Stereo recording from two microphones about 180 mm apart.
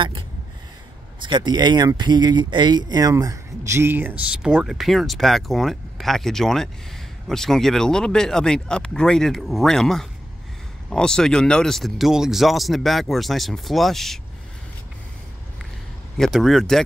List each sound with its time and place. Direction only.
1.2 s speech: 25° right (ahead or behind); by 14.2 s centre (ahead or behind)
16.2 s speech: centre (ahead or behind)